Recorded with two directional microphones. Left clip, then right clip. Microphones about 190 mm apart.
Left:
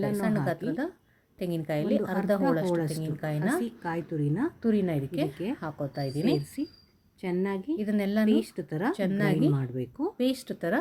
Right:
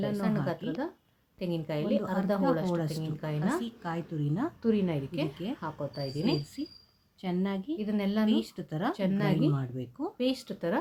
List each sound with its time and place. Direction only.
0.0 s a woman's voice: 20° left (ahead or behind)
6.6 s a woman's voice: 5° left (ahead or behind)
7.8 s a woman's voice: 20° left (ahead or behind)
8.4 s a woman's voice: 10° left (ahead or behind)
8.9 s a woman's voice: 20° left (ahead or behind)